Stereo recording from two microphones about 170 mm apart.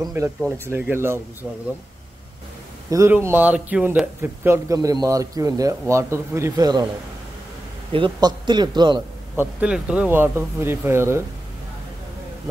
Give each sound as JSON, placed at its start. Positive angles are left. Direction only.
{"t": 0.7, "sound": "a man's voice", "side_deg": -10}
{"t": 2.9, "sound": "a man's voice", "side_deg": -15}
{"t": 7.9, "sound": "a man's voice", "side_deg": -25}
{"t": 9.4, "sound": "a man's voice", "side_deg": -5}